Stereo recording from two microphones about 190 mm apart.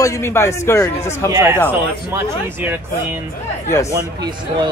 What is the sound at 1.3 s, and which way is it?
Speech, 15° right (ahead or behind).